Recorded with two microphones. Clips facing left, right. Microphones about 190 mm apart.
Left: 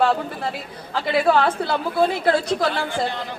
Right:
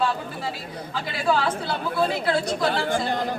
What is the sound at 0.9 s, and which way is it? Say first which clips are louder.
Speech: left 6 dB; 60° left (ahead or behind).